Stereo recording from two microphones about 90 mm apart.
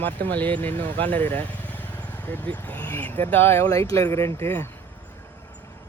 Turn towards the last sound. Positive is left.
turn(degrees=25)  # may be behind; listen again after turning